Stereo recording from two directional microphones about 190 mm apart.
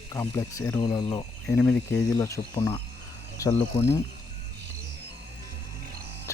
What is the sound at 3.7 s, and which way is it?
Speech, 30° left (ahead or behind).